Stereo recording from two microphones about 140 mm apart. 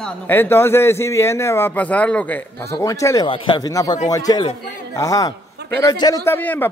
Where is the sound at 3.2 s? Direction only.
35° left (ahead or behind).